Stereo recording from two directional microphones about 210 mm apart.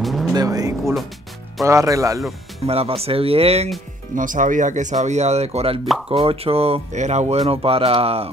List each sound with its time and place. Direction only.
0.0 s vehicle: centre (ahead or behind)
0.3 s speech: 15° right (ahead or behind)
2.6 s speech: 30° right (ahead or behind)